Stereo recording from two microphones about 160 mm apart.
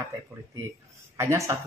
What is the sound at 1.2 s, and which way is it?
Speech, 15° right (ahead or behind).